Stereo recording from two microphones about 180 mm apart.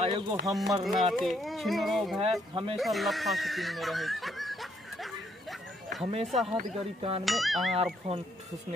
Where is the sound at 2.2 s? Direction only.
30° right (ahead or behind).